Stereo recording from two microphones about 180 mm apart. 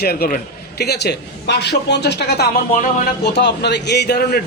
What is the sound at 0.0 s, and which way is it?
A man's voice, 60° left (ahead or behind).